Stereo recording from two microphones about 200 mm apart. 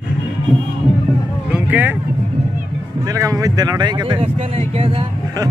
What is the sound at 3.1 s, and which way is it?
Speech, 15° right (ahead or behind).